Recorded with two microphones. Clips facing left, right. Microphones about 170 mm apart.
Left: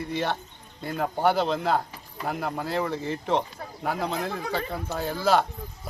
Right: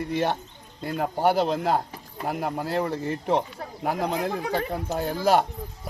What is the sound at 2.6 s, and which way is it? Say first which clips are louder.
Speech: right 1 dB; 40° right (ahead or behind).